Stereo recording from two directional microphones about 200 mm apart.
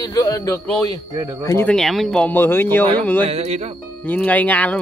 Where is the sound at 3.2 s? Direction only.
30° right (ahead or behind).